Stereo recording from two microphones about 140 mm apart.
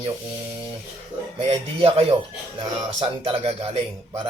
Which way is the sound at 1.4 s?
40° right (ahead or behind).